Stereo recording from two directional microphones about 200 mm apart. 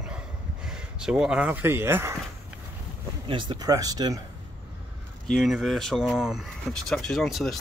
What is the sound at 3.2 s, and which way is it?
Speech, 25° right (ahead or behind).